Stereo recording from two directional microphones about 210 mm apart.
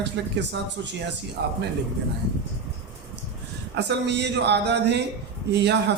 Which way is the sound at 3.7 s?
55° right (ahead or behind).